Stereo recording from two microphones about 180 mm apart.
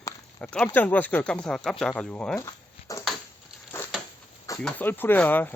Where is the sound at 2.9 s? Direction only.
20° left (ahead or behind).